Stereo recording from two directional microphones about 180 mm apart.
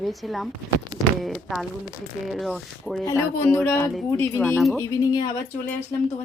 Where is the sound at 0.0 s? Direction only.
Centre (ahead or behind).